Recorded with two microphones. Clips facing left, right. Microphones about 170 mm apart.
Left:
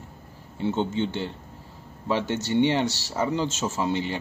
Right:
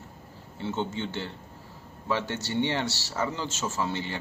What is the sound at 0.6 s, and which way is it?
Speech, 20° left (ahead or behind).